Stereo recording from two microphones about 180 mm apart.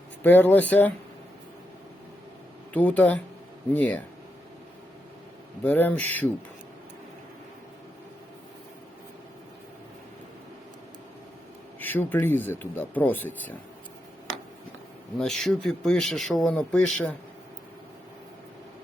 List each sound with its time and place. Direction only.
0.2 s speech: 10° left (ahead or behind)
2.7 s speech: 10° left (ahead or behind)
5.6 s speech: 10° left (ahead or behind)
11.8 s speech: 10° left (ahead or behind)
15.2 s speech: 5° left (ahead or behind)